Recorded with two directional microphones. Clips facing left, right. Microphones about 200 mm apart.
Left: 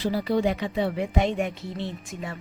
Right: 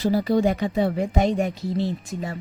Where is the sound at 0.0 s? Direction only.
45° right (ahead or behind).